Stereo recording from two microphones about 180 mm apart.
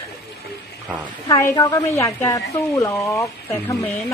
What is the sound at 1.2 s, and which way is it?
A woman's voice, 20° left (ahead or behind).